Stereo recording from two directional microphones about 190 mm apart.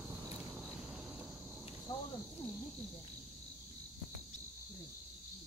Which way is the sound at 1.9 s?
20° left (ahead or behind).